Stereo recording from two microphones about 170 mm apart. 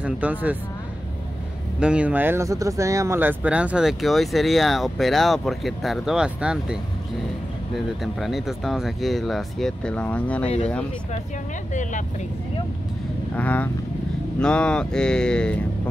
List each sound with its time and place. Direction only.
0.0 s speech: 10° right (ahead or behind)
1.8 s speech: 5° right (ahead or behind)
8.0 s speech: centre (ahead or behind)
11.7 s speech: 50° left (ahead or behind)
13.4 s speech: 10° left (ahead or behind)